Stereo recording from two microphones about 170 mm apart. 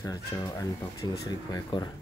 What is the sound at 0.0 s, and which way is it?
Speech, 20° left (ahead or behind).